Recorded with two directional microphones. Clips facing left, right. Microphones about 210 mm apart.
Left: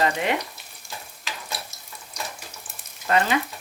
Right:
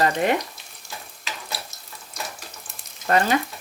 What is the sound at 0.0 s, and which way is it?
Frying, 45° right (ahead or behind).